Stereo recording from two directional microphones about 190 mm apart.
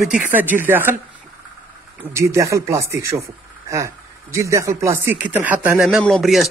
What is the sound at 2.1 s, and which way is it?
Speech, 15° right (ahead or behind).